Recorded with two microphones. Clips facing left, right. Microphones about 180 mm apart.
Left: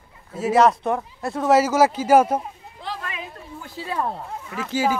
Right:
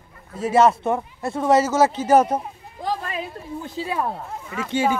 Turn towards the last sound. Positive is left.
turn(degrees=0)  # may be behind; listen again after turning